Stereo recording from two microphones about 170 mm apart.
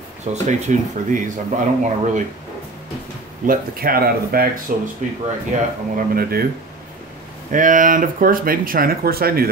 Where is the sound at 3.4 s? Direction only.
60° right (ahead or behind).